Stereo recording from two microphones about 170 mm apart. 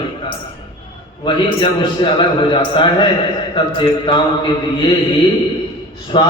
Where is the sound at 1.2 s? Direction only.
30° left (ahead or behind).